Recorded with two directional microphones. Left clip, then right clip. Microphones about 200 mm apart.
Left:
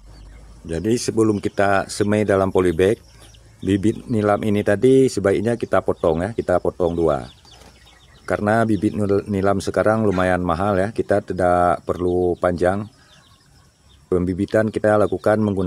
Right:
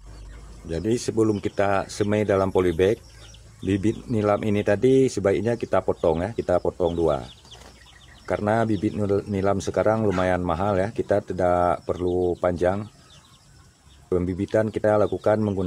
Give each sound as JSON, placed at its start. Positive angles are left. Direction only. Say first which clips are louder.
{"t": 0.7, "sound": "speech", "louder": "left 4 dB", "side_deg": 25}
{"t": 14.0, "sound": "a man's voice", "louder": "left 4 dB", "side_deg": 30}